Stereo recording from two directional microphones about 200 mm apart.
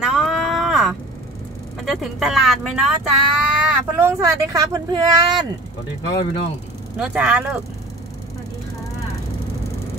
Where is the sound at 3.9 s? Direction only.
15° right (ahead or behind).